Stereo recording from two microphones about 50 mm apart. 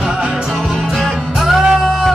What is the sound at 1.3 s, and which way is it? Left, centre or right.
Music, centre.